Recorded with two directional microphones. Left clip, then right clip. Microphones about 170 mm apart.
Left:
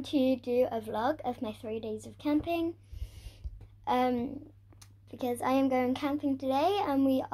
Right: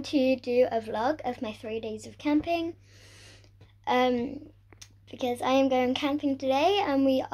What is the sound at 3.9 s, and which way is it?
A woman's voice, 10° right (ahead or behind).